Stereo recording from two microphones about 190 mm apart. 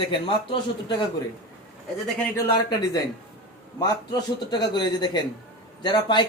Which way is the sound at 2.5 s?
20° left (ahead or behind).